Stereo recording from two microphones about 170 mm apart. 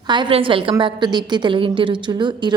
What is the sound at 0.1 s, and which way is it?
A woman's voice, 30° right (ahead or behind).